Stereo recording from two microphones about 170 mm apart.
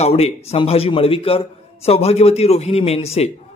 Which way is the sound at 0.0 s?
40° left (ahead or behind).